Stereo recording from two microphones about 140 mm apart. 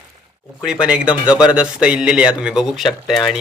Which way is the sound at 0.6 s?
5° right (ahead or behind).